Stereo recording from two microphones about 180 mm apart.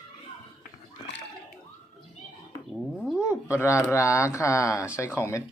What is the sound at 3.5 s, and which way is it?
Speech, 15° left (ahead or behind).